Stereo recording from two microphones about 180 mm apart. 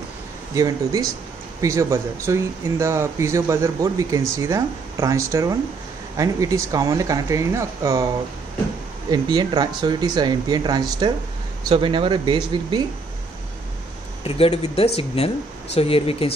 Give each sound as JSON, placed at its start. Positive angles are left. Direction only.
{"t": 0.6, "sound": "speech", "side_deg": -20}
{"t": 9.1, "sound": "speech", "side_deg": -20}
{"t": 14.2, "sound": "speech", "side_deg": 35}